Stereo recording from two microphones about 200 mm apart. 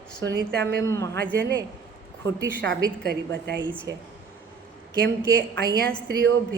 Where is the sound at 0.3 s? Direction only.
55° right (ahead or behind).